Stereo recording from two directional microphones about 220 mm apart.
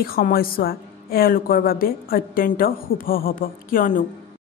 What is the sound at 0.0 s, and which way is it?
A woman's voice, 40° left (ahead or behind).